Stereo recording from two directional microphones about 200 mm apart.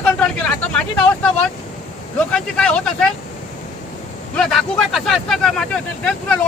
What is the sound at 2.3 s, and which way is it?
Speech, 5° left (ahead or behind).